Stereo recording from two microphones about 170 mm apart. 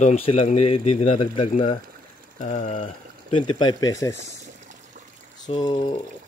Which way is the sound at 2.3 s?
45° left (ahead or behind).